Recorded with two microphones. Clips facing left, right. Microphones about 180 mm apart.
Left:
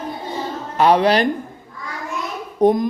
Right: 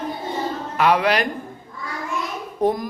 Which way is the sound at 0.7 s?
30° left (ahead or behind).